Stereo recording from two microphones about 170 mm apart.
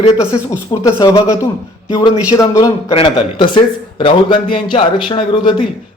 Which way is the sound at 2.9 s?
35° left (ahead or behind).